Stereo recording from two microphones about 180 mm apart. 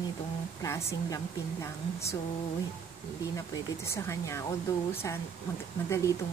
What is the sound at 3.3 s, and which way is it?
A woman's voice, 15° left (ahead or behind).